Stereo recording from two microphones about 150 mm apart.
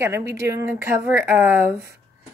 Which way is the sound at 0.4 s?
20° right (ahead or behind).